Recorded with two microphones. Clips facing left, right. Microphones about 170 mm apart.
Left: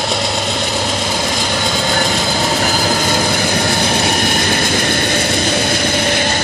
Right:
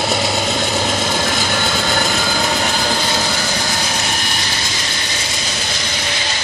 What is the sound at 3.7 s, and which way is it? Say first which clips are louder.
Vehicle: left 6 dB; 60° left (ahead or behind).